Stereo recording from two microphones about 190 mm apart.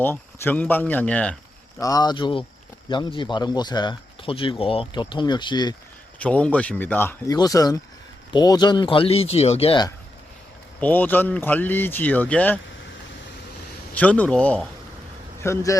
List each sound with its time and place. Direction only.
0.0 s speech: 10° left (ahead or behind)
1.8 s speech: 20° left (ahead or behind)
6.1 s speech: 5° left (ahead or behind); by 9.9 s 25° left (ahead or behind)
10.8 s speech: 10° left (ahead or behind)
13.9 s speech: 5° left (ahead or behind)